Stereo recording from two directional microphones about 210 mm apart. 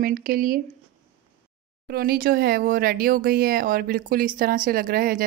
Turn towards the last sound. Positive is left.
turn(degrees=-45)  # may be behind; listen again after turning